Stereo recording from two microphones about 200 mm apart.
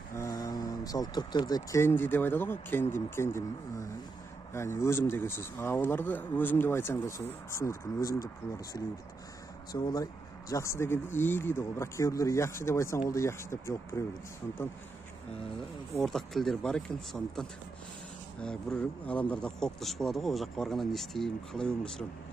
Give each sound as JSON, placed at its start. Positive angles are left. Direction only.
{"t": 0.1, "sound": "speech", "side_deg": 15}
{"t": 4.6, "sound": "speech", "side_deg": 15}
{"t": 9.7, "sound": "speech", "side_deg": 20}
{"t": 16.0, "sound": "speech", "side_deg": 0}